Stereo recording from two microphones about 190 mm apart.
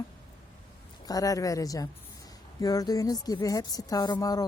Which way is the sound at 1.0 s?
20° left (ahead or behind).